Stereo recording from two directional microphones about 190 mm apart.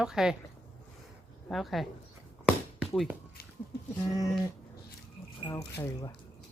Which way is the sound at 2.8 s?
Centre (ahead or behind).